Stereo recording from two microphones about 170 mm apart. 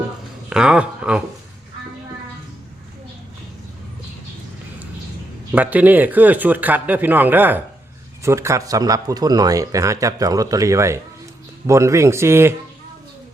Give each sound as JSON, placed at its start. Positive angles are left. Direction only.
{"t": 0.5, "sound": "speech", "side_deg": -5}
{"t": 5.5, "sound": "speech", "side_deg": -10}